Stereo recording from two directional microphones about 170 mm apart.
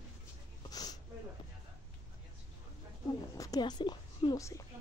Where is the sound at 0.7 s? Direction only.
20° left (ahead or behind).